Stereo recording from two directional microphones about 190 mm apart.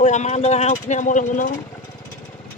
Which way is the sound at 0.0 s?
40° left (ahead or behind).